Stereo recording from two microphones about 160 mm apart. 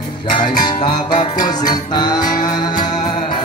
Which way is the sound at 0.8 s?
30° left (ahead or behind).